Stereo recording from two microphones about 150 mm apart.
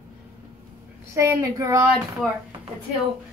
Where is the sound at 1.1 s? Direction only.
20° right (ahead or behind).